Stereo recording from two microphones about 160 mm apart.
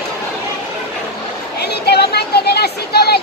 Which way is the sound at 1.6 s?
90° left.